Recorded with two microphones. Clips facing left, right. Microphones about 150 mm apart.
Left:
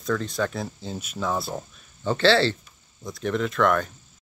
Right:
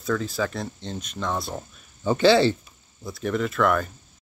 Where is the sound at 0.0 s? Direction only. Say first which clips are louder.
Even; 5° right (ahead or behind).